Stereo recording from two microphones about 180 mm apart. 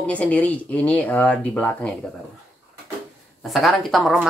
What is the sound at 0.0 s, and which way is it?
Speech, 5° left (ahead or behind).